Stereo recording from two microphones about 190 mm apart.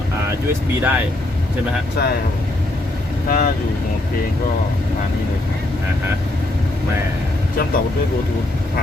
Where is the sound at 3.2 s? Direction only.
45° left (ahead or behind).